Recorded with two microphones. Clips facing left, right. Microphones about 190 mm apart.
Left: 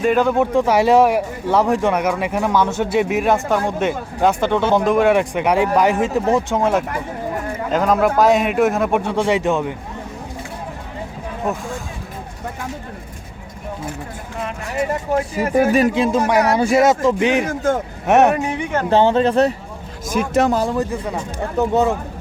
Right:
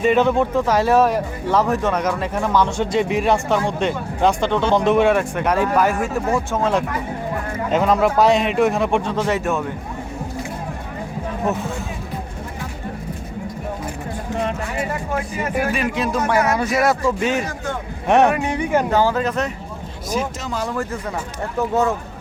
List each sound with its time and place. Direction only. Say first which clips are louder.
0.0 s a man's voice: even; centre (ahead or behind)
0.5 s speech: left 3 dB; 15° left (ahead or behind)
5.1 s speech: left 3 dB; 15° left (ahead or behind)
7.7 s a man's voice: even; centre (ahead or behind); by 9.7 s 15° left (ahead or behind)
15.4 s speech: left 8 dB; 40° left (ahead or behind)
16.1 s speech: left 3 dB; 20° left (ahead or behind)
16.4 s speech: left 5 dB; 30° left (ahead or behind)
17.5 s a man's voice: left 9 dB; 45° left (ahead or behind)
18.9 s speech: left 4 dB; 25° left (ahead or behind)
20.1 s speech: left 7 dB; 60° left (ahead or behind)
20.5 s speech: left 6 dB; 35° left (ahead or behind)
21.6 s speech: left 3 dB; 20° left (ahead or behind)